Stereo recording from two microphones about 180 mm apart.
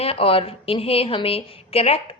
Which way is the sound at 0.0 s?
30° left (ahead or behind).